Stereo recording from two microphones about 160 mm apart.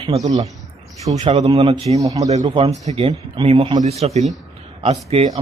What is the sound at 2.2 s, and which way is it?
Speech, 45° right (ahead or behind).